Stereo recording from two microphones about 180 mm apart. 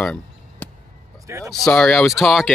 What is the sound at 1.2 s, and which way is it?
Speech, 15° right (ahead or behind).